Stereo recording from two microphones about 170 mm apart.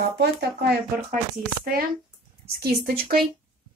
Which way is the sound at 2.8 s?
65° right (ahead or behind).